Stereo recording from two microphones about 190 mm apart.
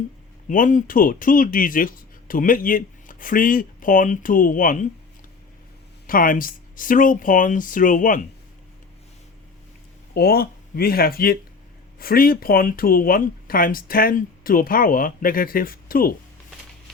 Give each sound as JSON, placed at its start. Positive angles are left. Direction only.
{"t": 0.4, "sound": "speech", "side_deg": 45}
{"t": 6.1, "sound": "speech", "side_deg": 45}
{"t": 10.2, "sound": "speech", "side_deg": 55}